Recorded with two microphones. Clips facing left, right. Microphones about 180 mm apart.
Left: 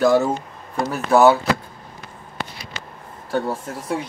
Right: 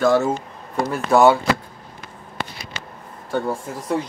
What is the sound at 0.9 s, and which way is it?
Speech, 5° left (ahead or behind).